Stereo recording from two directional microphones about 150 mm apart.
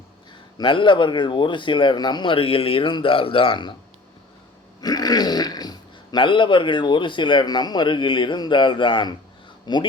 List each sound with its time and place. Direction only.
0.6 s speech: 35° left (ahead or behind)
4.8 s speech: 25° left (ahead or behind)